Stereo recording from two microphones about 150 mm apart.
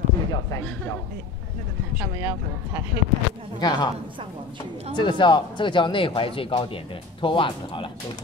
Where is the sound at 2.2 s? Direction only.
20° right (ahead or behind).